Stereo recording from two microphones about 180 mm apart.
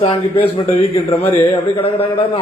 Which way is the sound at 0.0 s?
30° left (ahead or behind).